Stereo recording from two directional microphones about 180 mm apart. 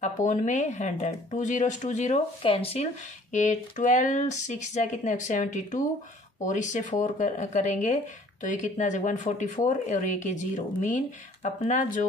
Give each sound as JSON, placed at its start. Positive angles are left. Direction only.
{"t": 0.0, "sound": "speech", "side_deg": 40}